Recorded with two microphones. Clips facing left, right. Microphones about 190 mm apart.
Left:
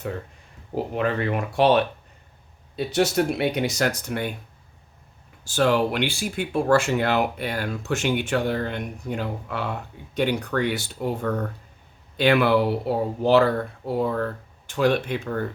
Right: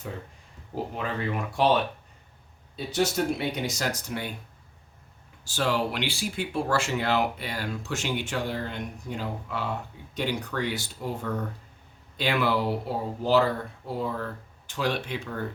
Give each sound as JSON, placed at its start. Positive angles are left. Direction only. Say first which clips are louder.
{"t": 0.9, "sound": "speech", "louder": "left 7 dB", "side_deg": 65}
{"t": 5.5, "sound": "speech", "louder": "left 6 dB", "side_deg": 55}